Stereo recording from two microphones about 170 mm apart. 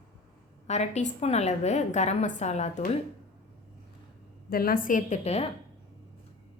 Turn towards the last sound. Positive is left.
turn(degrees=40)  # may be behind; listen again after turning